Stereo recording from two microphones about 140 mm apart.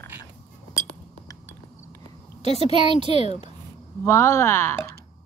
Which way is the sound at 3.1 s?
50° left (ahead or behind).